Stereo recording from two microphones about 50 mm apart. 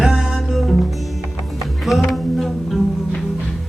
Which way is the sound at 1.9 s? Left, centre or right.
Centre.